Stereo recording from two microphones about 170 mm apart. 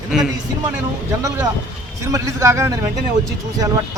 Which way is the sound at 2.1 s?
20° right (ahead or behind).